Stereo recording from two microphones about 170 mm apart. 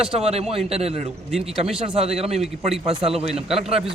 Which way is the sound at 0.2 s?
35° right (ahead or behind).